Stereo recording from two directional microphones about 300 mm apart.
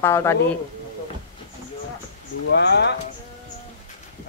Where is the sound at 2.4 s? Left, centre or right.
Left.